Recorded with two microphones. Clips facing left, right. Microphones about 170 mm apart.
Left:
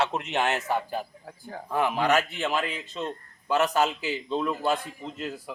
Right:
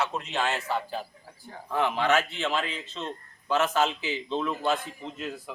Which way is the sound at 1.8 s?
10° left (ahead or behind).